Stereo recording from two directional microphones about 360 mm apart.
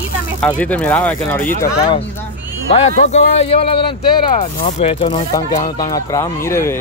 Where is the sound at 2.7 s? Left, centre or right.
Centre.